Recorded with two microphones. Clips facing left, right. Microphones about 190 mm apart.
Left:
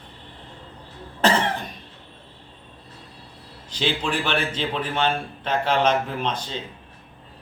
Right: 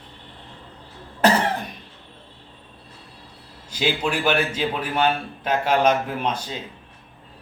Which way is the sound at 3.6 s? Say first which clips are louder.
Right 2 dB; 10° right (ahead or behind).